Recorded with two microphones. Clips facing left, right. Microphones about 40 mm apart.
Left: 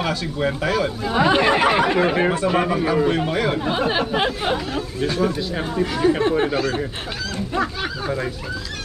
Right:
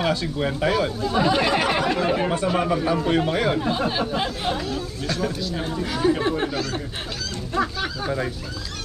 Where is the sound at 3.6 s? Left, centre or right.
Left.